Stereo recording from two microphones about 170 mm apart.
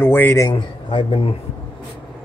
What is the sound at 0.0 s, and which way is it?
Speech, 15° left (ahead or behind).